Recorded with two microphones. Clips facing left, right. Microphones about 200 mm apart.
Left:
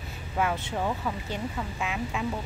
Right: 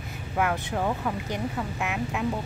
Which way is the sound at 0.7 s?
10° right (ahead or behind).